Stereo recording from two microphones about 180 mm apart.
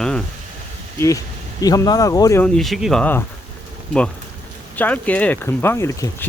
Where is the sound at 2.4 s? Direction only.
Centre (ahead or behind).